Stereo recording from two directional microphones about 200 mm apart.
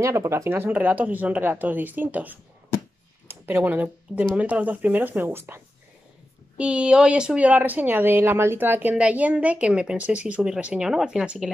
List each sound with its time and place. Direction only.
0.0 s speech: 15° right (ahead or behind)
6.6 s speech: 5° right (ahead or behind)